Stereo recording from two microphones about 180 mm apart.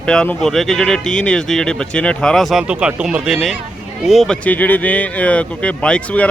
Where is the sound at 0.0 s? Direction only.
5° left (ahead or behind).